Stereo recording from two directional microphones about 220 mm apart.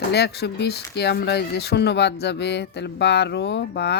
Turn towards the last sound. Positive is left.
turn(degrees=50)  # may be behind; listen again after turning